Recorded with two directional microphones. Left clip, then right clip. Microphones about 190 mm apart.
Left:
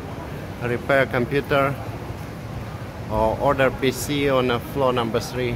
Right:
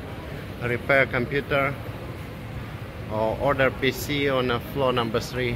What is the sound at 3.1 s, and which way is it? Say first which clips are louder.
Speech: left 4 dB; 10° left (ahead or behind).